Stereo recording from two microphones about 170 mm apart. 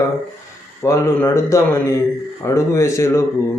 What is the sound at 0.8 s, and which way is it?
Speech, 15° left (ahead or behind).